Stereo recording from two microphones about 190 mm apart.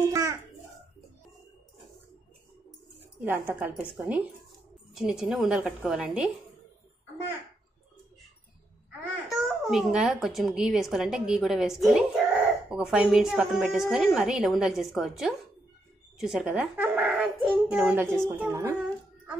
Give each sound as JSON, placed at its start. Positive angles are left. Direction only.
{"t": 0.1, "sound": "music", "side_deg": -15}
{"t": 3.2, "sound": "a child's voice", "side_deg": -10}
{"t": 9.3, "sound": "a child's voice", "side_deg": 0}